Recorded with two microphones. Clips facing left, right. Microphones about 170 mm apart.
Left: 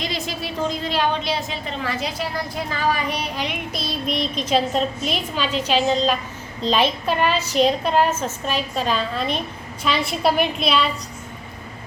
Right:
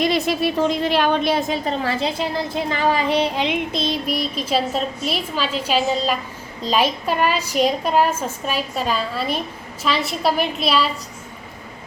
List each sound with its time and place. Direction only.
0.0 s a woman's voice: 60° right (ahead or behind)
1.8 s a woman's voice: 30° right (ahead or behind)
4.0 s a woman's voice: 5° right (ahead or behind)